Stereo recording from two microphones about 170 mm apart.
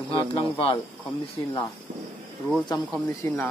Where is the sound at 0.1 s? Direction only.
30° left (ahead or behind).